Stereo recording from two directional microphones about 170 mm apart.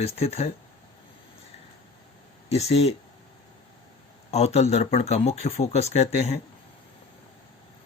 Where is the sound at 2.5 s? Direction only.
40° left (ahead or behind).